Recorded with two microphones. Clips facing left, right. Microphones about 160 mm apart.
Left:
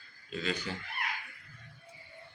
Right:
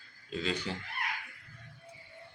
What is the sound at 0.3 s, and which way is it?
Speech, 30° right (ahead or behind).